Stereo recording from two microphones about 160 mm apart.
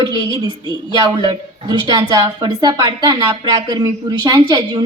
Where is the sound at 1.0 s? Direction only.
30° right (ahead or behind).